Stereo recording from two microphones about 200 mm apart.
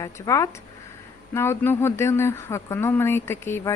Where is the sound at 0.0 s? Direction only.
15° left (ahead or behind).